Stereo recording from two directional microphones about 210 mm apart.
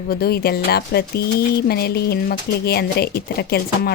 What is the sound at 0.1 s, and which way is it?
Speech, 45° left (ahead or behind).